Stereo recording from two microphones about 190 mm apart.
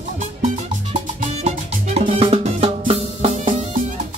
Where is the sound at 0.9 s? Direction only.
35° right (ahead or behind).